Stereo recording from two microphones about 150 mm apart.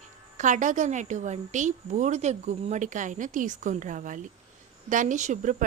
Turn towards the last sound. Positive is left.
turn(degrees=-55)  # may be behind; listen again after turning